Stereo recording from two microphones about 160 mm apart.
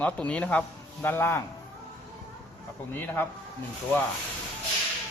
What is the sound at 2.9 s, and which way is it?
Speech, 10° left (ahead or behind).